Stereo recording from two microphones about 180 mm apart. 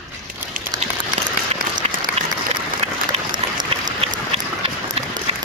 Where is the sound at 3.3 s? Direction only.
25° right (ahead or behind).